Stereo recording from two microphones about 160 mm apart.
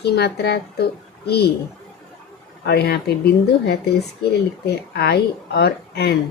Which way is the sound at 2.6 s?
90° left.